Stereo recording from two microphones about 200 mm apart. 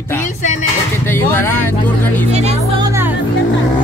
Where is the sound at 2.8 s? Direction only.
15° right (ahead or behind).